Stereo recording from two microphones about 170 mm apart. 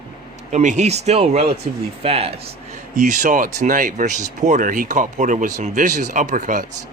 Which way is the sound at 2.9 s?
50° right (ahead or behind).